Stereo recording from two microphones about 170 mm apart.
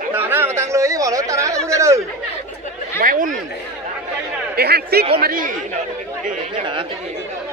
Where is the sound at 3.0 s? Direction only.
55° right (ahead or behind).